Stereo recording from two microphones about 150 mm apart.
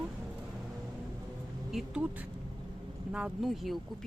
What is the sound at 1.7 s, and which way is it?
Speech, 10° right (ahead or behind).